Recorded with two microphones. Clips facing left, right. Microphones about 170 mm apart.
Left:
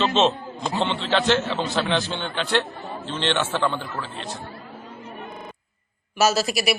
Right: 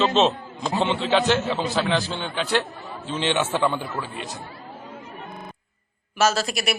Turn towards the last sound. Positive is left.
turn(degrees=0)  # may be behind; listen again after turning